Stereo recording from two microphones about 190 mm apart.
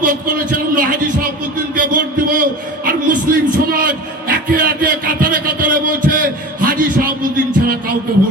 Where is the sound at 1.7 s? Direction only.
45° right (ahead or behind).